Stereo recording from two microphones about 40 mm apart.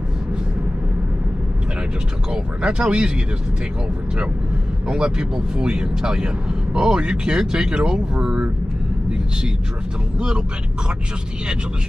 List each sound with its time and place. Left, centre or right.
2.3 s speech: right
4.8 s speech: right
10.1 s speech: right